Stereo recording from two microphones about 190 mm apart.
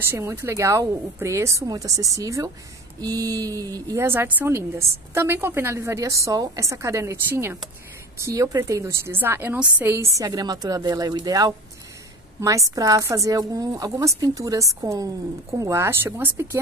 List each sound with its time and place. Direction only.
0.1 s a woman's voice: 10° right (ahead or behind)